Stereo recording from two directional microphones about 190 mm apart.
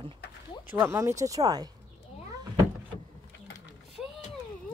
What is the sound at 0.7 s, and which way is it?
Speech, 10° right (ahead or behind).